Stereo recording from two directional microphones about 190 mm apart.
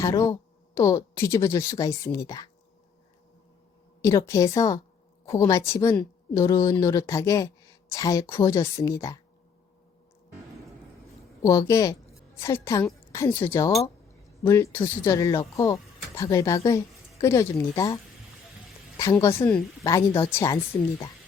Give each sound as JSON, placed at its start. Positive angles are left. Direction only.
{"t": 0.0, "sound": "speech", "side_deg": 15}
{"t": 4.0, "sound": "a woman's voice", "side_deg": 15}
{"t": 11.4, "sound": "a woman's voice", "side_deg": 15}